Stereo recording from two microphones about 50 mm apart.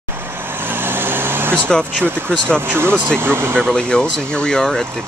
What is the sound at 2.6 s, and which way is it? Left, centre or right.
Speech, right.